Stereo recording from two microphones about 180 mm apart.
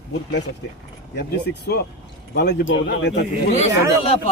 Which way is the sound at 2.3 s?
80° left.